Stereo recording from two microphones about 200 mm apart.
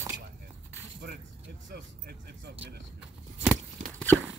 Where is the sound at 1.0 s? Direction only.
55° right (ahead or behind).